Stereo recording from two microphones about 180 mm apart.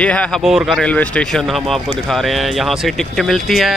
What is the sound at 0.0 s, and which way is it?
Speech, 5° left (ahead or behind).